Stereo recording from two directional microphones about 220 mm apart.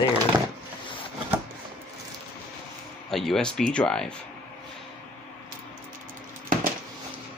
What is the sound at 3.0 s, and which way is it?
Speech, centre (ahead or behind).